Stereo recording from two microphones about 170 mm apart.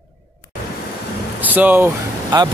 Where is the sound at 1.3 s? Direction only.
10° right (ahead or behind).